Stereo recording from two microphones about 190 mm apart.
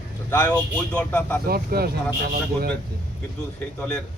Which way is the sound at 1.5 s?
50° right (ahead or behind).